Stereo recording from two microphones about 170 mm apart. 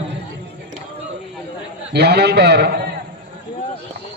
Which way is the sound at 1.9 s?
75° right (ahead or behind).